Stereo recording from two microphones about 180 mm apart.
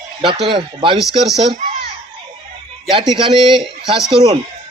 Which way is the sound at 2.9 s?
30° right (ahead or behind).